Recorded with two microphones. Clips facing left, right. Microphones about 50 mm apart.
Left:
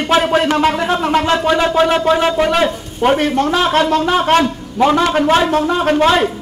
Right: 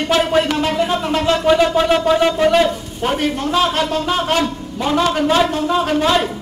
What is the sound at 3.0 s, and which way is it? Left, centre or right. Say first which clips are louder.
Speech: left 6 dB; left.